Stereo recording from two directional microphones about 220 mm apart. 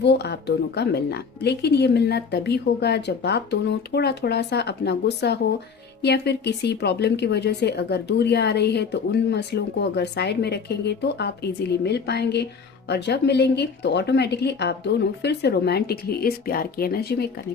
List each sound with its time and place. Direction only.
0.0 s a woman's voice: 50° left (ahead or behind)